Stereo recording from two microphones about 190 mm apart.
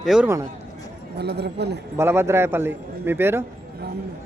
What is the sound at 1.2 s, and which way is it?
Speech, 60° right (ahead or behind).